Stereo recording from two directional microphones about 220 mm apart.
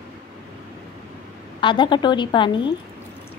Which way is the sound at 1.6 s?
20° left (ahead or behind).